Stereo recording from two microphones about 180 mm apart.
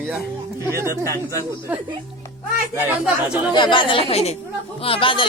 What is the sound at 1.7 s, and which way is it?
Speech, 10° right (ahead or behind).